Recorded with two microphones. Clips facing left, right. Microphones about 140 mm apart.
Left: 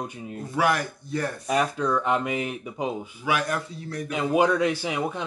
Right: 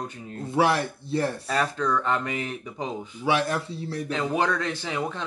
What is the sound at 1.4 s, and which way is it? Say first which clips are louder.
Speech: left 2 dB; 15° left (ahead or behind).